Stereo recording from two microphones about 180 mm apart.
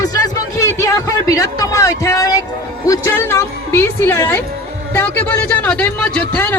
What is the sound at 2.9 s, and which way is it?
A man's voice, 15° left (ahead or behind).